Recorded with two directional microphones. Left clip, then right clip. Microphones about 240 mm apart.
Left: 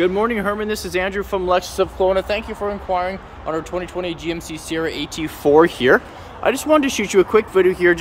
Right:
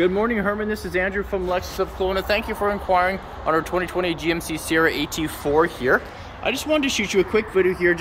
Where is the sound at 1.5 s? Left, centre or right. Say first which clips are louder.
Left 6 dB; left.